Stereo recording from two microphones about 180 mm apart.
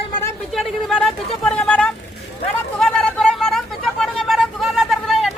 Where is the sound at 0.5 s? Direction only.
Centre (ahead or behind).